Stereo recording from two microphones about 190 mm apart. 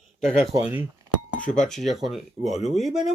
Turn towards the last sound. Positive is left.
turn(degrees=0)  # may be behind; listen again after turning